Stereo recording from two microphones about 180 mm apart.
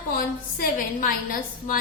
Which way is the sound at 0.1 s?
50° left (ahead or behind).